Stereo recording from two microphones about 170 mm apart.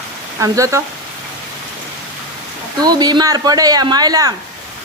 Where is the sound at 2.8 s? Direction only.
25° right (ahead or behind).